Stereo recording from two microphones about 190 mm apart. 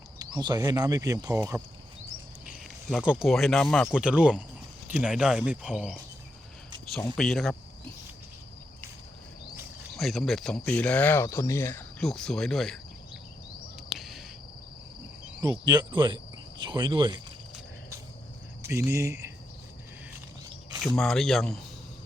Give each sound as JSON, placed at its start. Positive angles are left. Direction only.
{"t": 0.2, "sound": "speech", "side_deg": -20}
{"t": 2.5, "sound": "speech", "side_deg": -5}
{"t": 7.2, "sound": "speech", "side_deg": 0}
{"t": 9.9, "sound": "speech", "side_deg": 0}
{"t": 13.9, "sound": "cricket", "side_deg": 0}
{"t": 15.4, "sound": "speech", "side_deg": -20}
{"t": 18.7, "sound": "speech", "side_deg": -15}
{"t": 20.8, "sound": "speech", "side_deg": 0}